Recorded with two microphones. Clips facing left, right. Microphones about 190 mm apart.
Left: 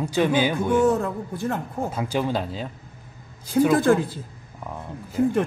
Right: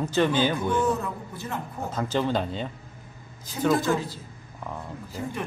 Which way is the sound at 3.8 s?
55° left (ahead or behind).